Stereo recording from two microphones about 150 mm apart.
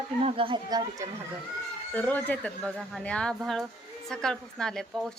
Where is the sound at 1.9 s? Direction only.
10° left (ahead or behind).